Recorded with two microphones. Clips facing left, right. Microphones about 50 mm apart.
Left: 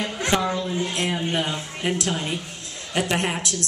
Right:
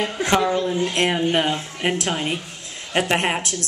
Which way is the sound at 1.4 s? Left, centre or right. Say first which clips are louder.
Right 4 dB; right.